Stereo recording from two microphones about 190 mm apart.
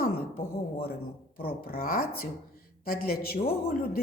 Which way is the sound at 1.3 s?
50° left (ahead or behind).